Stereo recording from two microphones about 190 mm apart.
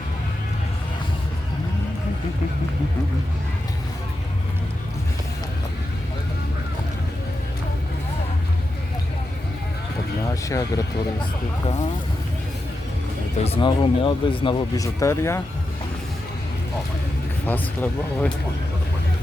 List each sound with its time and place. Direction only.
10.5 s speech: 15° left (ahead or behind)
13.4 s speech: 30° left (ahead or behind)
17.4 s speech: 10° left (ahead or behind)